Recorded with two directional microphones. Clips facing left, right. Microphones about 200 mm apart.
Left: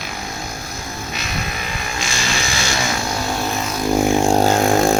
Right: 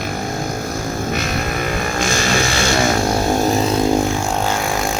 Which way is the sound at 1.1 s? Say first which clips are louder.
Right 6 dB; 50° right (ahead or behind).